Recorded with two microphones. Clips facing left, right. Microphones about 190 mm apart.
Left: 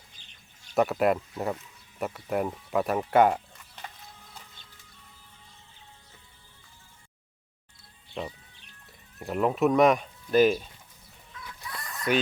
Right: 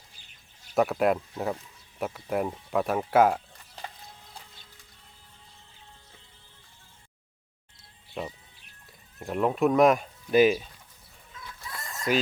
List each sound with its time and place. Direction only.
0.7 s speech: centre (ahead or behind)
8.2 s speech: 5° right (ahead or behind)
11.7 s a sound: 25° right (ahead or behind)